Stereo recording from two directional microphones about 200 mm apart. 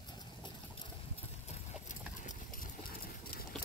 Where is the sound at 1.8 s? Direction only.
40° left (ahead or behind).